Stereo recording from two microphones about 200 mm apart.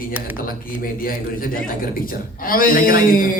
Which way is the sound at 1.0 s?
45° left (ahead or behind).